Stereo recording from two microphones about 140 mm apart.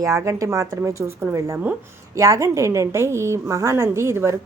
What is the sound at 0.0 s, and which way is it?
A woman's voice, 20° right (ahead or behind).